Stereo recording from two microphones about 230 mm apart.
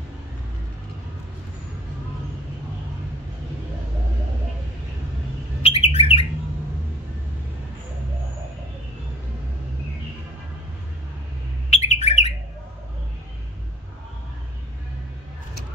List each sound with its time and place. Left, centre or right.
5.6 s bird: left
11.7 s bird: left